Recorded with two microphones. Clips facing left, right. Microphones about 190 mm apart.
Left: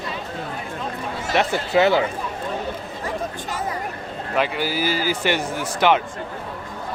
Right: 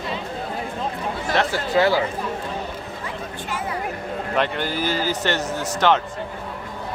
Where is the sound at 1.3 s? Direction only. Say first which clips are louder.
Left 2 dB; 20° left (ahead or behind).